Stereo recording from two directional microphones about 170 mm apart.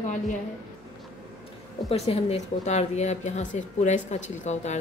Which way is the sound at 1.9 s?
35° left (ahead or behind).